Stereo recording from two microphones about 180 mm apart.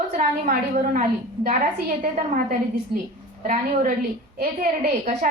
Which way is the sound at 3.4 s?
45° right (ahead or behind).